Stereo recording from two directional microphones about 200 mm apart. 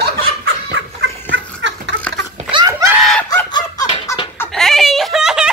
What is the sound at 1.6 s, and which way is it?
Laughter, 60° right (ahead or behind).